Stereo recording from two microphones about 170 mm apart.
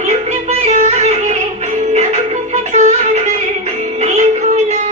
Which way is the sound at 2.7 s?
40° right (ahead or behind).